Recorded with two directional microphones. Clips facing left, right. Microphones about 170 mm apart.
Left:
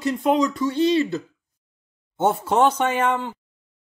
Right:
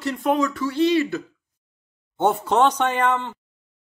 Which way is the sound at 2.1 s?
5° left (ahead or behind).